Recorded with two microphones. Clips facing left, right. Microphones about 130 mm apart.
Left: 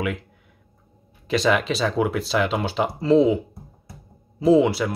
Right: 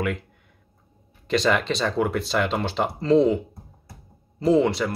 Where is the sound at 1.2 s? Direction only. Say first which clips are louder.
Left 1 dB; 5° left (ahead or behind).